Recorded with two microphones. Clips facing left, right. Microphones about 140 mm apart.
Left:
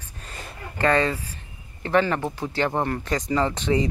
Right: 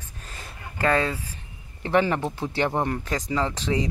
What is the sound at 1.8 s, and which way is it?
Speech, 20° right (ahead or behind).